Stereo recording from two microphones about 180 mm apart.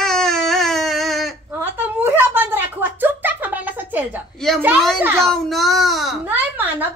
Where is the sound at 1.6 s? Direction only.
10° right (ahead or behind).